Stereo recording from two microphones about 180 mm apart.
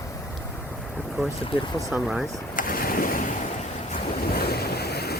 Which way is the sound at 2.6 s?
55° left (ahead or behind).